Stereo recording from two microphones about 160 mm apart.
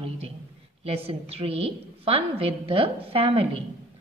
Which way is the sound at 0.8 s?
35° right (ahead or behind).